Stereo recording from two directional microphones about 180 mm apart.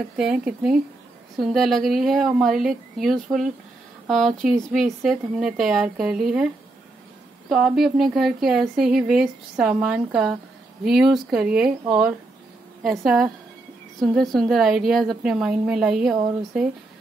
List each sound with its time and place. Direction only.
0.2 s speech: 5° right (ahead or behind)